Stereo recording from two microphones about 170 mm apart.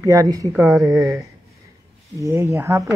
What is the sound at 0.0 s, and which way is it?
Speech, 20° right (ahead or behind).